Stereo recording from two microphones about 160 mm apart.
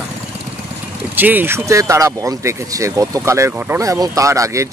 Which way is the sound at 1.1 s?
10° right (ahead or behind).